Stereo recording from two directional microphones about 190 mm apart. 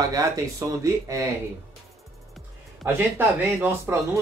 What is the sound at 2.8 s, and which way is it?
Speech, centre (ahead or behind).